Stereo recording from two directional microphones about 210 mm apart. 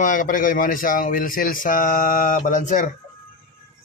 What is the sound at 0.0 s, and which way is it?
A man's voice, 40° left (ahead or behind).